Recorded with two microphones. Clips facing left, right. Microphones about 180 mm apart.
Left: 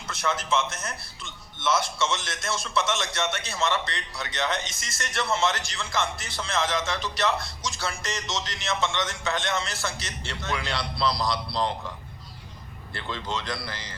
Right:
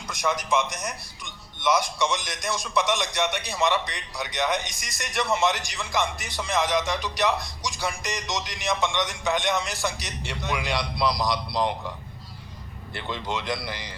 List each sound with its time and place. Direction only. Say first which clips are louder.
0.1 s a man's voice: right 2 dB; 15° right (ahead or behind)
12.9 s a man's voice: right 2 dB; 15° right (ahead or behind)